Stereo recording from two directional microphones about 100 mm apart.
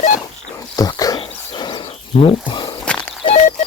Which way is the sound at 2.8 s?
10° left (ahead or behind).